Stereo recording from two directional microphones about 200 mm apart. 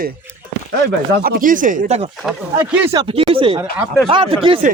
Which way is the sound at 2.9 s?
25° right (ahead or behind).